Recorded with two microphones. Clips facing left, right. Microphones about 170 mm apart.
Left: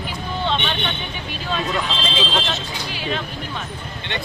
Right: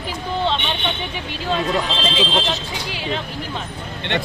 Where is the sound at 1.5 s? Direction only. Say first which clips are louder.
Right 2 dB; 20° right (ahead or behind).